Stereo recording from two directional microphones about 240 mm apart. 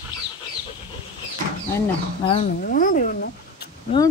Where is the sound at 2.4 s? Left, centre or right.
Left.